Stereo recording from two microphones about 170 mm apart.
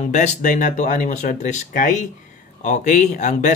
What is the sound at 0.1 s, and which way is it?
Speech, 50° left (ahead or behind).